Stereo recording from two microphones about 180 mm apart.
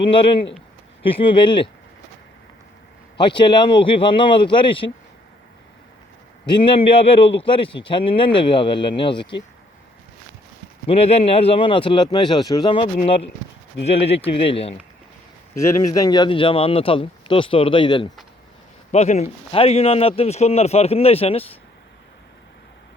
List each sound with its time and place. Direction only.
0.0 s speech: 30° left (ahead or behind)
3.2 s speech: 25° left (ahead or behind)
6.4 s speech: 25° left (ahead or behind)
10.8 s a man's voice: 35° left (ahead or behind)
15.5 s speech: 15° left (ahead or behind)
18.9 s a man's voice: 40° left (ahead or behind)